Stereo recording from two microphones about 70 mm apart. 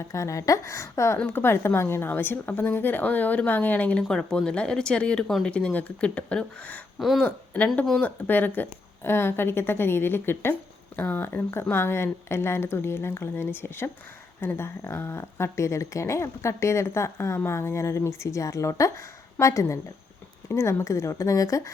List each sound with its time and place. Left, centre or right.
0.1 s a woman's voice: left
4.1 s a woman's voice: centre; by 21.7 s left